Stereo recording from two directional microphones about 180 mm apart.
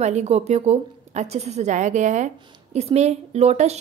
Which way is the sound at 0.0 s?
40° right (ahead or behind).